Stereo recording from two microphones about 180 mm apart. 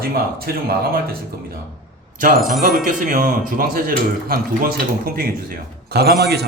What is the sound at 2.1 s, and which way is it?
Speech, 50° right (ahead or behind).